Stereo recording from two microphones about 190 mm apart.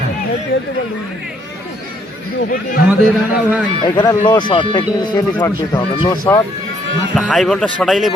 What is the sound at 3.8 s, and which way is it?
Speech, 25° left (ahead or behind).